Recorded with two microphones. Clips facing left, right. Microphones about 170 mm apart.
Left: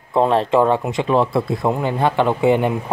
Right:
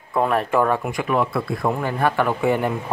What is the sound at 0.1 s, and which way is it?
Speech, 25° left (ahead or behind).